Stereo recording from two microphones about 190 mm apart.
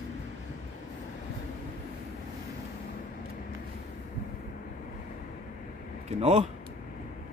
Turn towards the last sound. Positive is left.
turn(degrees=-35)  # may be behind; listen again after turning